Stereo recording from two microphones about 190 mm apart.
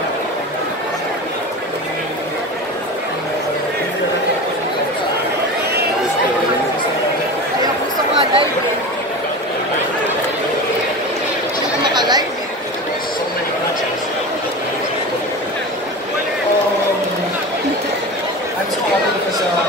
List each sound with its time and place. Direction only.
11.9 s chatter: 20° right (ahead or behind)